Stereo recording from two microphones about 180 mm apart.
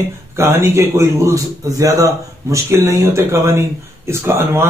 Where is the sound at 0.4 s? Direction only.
10° right (ahead or behind).